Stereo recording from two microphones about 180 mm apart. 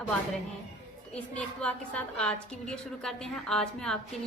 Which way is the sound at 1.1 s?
5° left (ahead or behind).